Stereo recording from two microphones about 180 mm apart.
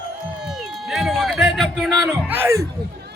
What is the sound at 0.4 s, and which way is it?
Music, centre (ahead or behind).